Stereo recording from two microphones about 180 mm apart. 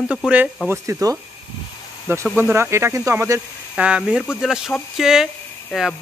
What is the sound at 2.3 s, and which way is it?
Speech, 10° right (ahead or behind).